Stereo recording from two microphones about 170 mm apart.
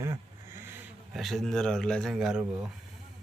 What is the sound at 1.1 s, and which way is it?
Speech, centre (ahead or behind).